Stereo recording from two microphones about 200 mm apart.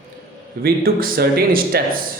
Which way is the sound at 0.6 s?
50° right (ahead or behind).